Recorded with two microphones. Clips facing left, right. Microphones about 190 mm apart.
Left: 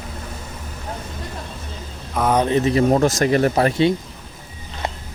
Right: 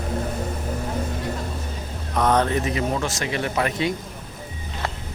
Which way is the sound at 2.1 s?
10° left (ahead or behind).